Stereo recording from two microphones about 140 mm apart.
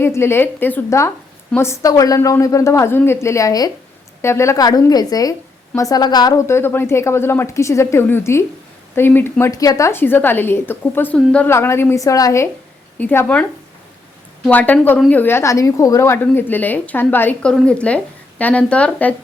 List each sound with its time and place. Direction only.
0.0 s a woman's voice: 20° left (ahead or behind)
13.0 s a woman's voice: 15° left (ahead or behind)
14.5 s a woman's voice: 10° left (ahead or behind)